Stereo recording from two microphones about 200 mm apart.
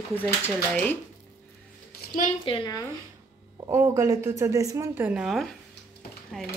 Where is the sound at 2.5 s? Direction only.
20° left (ahead or behind).